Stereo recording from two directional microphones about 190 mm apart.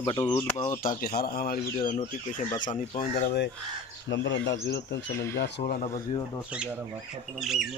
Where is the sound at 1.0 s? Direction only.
55° left (ahead or behind).